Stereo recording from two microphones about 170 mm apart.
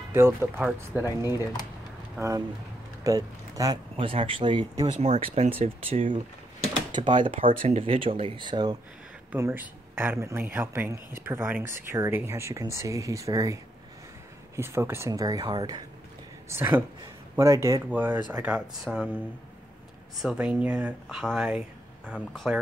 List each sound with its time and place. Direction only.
0.1 s speech: 15° right (ahead or behind)
1.0 s speech: 20° left (ahead or behind)
2.1 s speech: 15° right (ahead or behind)
4.8 s speech: 40° right (ahead or behind); by 8.7 s 25° right (ahead or behind)
9.3 s speech: 10° right (ahead or behind)
16.4 s speech: 15° right (ahead or behind)
20.2 s speech: 5° right (ahead or behind)